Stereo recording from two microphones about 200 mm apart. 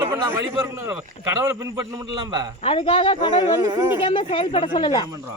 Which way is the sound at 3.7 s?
15° right (ahead or behind).